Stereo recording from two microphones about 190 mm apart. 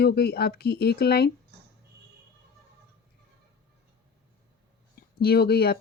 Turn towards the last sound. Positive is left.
turn(degrees=55)  # may be behind; listen again after turning